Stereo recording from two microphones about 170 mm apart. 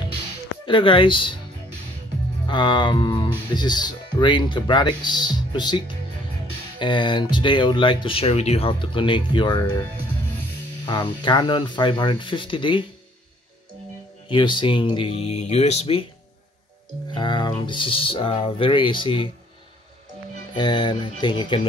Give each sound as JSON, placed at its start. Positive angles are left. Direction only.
{"t": 0.7, "sound": "speech", "side_deg": 30}
{"t": 2.4, "sound": "speech", "side_deg": 25}
{"t": 10.9, "sound": "speech", "side_deg": 25}
{"t": 14.3, "sound": "speech", "side_deg": 30}
{"t": 17.1, "sound": "speech", "side_deg": 25}
{"t": 20.5, "sound": "speech", "side_deg": 25}